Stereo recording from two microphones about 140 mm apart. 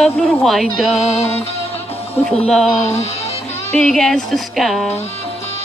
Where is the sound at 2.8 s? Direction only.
50° left (ahead or behind).